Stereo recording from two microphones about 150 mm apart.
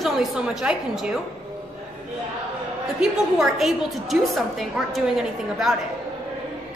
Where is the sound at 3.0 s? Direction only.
5° right (ahead or behind).